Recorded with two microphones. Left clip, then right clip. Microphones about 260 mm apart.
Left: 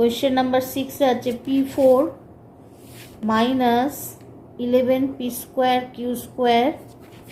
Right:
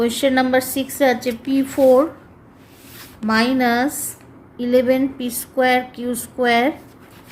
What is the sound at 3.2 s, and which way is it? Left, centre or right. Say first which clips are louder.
A woman's voice: right 2 dB; right.